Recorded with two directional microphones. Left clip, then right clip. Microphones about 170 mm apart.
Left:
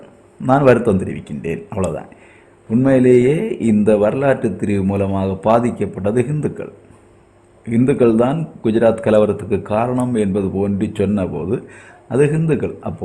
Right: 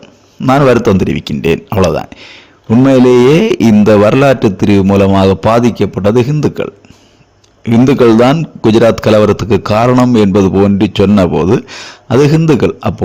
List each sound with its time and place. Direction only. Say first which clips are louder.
0.4 s speech: right 5 dB; 40° right (ahead or behind)
5.7 s speech: right 8 dB; 30° right (ahead or behind)
7.6 s a man's voice: right 7 dB; 45° right (ahead or behind)